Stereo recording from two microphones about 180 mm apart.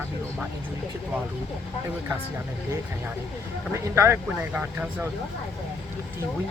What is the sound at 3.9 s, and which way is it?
Speech, 15° right (ahead or behind).